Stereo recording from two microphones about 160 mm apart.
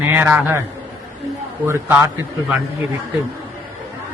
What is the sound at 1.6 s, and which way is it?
Speech, 15° right (ahead or behind).